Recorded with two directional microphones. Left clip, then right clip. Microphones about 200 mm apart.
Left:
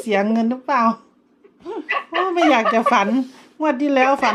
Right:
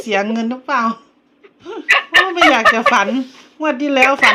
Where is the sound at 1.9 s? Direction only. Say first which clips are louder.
Right 10 dB; 30° right (ahead or behind).